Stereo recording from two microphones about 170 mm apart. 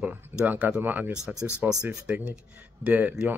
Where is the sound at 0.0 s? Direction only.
10° right (ahead or behind).